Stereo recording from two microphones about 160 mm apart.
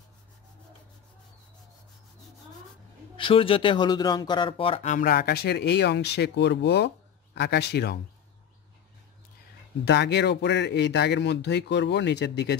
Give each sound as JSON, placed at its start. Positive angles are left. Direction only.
{"t": 3.2, "sound": "speech", "side_deg": 35}
{"t": 4.8, "sound": "speech", "side_deg": 55}
{"t": 9.8, "sound": "speech", "side_deg": 90}